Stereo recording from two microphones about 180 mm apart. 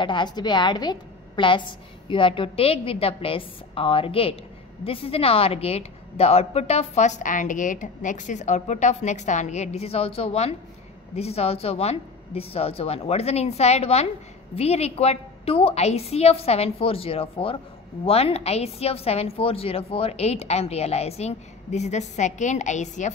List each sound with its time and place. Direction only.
0.0 s a woman's voice: 25° left (ahead or behind); by 23.1 s 40° left (ahead or behind)